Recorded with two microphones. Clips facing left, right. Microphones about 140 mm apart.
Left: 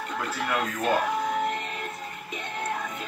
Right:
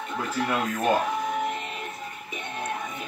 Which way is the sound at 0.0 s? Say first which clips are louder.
Right 2 dB; 20° right (ahead or behind).